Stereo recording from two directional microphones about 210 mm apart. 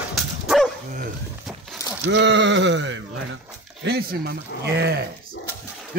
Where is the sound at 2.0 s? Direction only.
55° right (ahead or behind).